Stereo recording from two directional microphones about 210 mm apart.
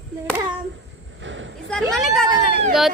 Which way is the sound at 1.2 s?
65° right (ahead or behind).